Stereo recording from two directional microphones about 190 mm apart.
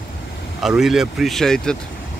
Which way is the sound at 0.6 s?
Centre (ahead or behind).